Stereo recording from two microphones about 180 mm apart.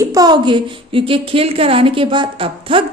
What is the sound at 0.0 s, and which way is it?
A woman's voice, 20° right (ahead or behind).